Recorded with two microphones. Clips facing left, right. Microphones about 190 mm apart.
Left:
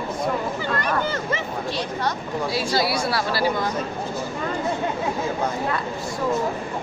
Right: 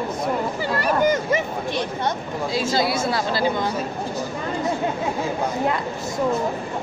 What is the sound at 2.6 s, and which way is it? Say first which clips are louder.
Speech: right 3 dB; 20° right (ahead or behind).